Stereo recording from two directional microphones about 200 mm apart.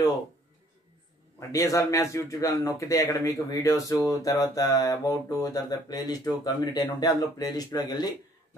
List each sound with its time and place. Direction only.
1.5 s a man's voice: 15° left (ahead or behind)